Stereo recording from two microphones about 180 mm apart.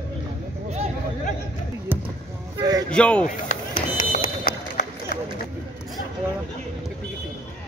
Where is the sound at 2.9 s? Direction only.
5° left (ahead or behind).